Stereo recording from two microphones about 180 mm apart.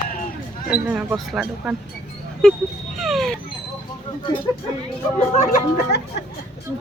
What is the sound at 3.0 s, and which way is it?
Speech, centre (ahead or behind).